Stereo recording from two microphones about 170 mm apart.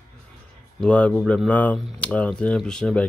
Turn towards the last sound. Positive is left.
turn(degrees=5)  # may be behind; listen again after turning